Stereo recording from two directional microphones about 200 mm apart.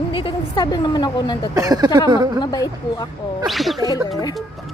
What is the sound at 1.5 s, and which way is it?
Speech, 20° right (ahead or behind).